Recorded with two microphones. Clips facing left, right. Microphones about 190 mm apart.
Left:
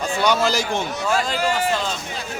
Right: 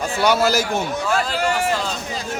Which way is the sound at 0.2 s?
5° right (ahead or behind).